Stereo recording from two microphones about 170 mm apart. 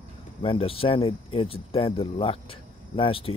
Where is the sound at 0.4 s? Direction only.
35° left (ahead or behind).